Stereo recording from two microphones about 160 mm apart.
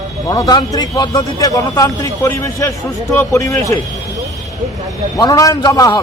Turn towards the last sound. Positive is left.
turn(degrees=25)  # may be behind; listen again after turning